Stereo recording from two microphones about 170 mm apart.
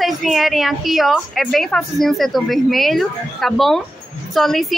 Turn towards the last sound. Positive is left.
turn(degrees=0)  # may be behind; listen again after turning